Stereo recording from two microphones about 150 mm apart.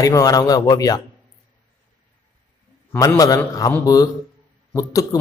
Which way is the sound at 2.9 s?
25° left (ahead or behind).